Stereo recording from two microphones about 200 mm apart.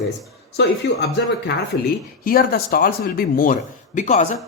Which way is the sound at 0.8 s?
60° left (ahead or behind).